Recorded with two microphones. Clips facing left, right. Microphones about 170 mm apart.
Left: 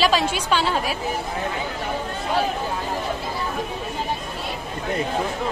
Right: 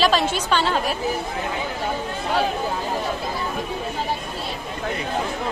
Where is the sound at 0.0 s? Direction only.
10° left (ahead or behind).